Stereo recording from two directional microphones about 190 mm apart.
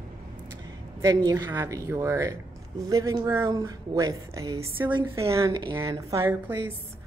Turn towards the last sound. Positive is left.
turn(degrees=-10)  # may be behind; listen again after turning